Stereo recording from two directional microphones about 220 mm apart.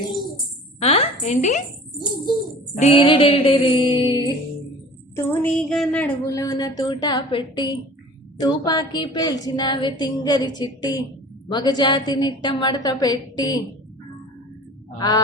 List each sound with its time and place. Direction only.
0.8 s a woman's voice: 25° left (ahead or behind)
2.7 s a woman's voice: 25° left (ahead or behind)
5.1 s a woman's voice: 10° left (ahead or behind)
14.9 s a woman's voice: 15° left (ahead or behind)